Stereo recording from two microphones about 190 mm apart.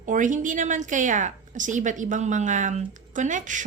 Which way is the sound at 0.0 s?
40° right (ahead or behind).